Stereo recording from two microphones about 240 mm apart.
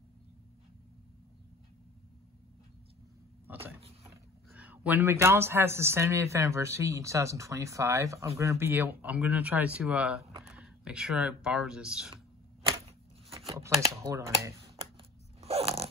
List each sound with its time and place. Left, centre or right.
3.4 s vehicle: centre
4.0 s speech: centre
13.8 s speech: centre
15.0 s a sound: right